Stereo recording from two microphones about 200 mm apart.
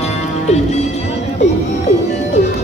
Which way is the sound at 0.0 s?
35° left (ahead or behind).